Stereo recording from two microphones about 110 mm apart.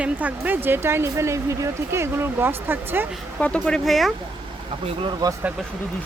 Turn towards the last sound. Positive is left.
turn(degrees=-35)  # may be behind; listen again after turning